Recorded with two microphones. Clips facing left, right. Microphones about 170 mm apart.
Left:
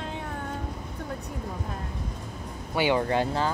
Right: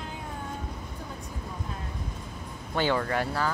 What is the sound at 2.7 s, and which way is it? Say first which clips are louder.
Speech: left 3 dB; 15° left (ahead or behind).